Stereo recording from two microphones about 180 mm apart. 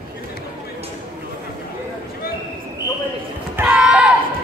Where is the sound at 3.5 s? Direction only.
5° right (ahead or behind).